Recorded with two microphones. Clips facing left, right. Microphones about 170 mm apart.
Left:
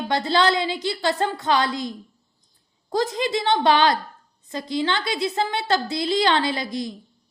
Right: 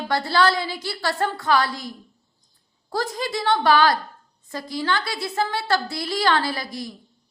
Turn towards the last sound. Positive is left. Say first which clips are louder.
# left 3 dB
turn(degrees=20)  # may be behind; listen again after turning